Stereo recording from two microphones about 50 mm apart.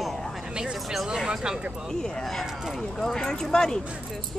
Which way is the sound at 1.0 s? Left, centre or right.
Centre.